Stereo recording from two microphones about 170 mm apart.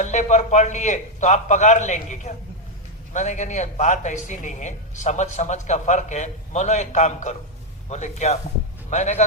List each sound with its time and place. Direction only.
0.0 s speech: 45° left (ahead or behind)